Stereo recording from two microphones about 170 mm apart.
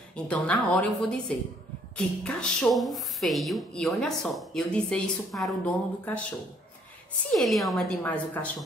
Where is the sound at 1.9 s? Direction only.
5° left (ahead or behind).